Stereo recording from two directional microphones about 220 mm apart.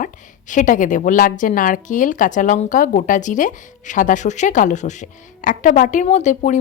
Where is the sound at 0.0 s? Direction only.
35° left (ahead or behind).